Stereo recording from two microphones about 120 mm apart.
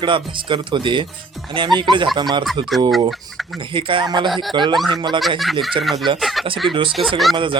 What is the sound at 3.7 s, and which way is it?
Speech, 45° right (ahead or behind).